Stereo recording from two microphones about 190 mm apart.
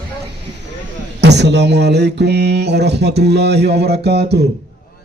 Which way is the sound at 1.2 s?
60° right (ahead or behind).